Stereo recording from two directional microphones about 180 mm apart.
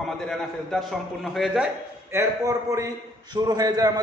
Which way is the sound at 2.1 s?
15° right (ahead or behind).